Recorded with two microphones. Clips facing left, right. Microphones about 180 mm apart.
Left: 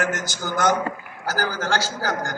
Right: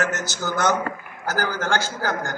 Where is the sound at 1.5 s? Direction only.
55° right (ahead or behind).